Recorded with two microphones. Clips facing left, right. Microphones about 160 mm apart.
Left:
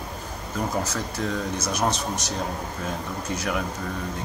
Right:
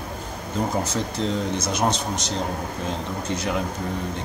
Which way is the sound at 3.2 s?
25° right (ahead or behind).